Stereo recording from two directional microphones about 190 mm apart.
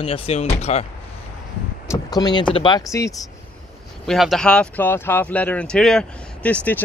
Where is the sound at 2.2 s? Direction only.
20° left (ahead or behind).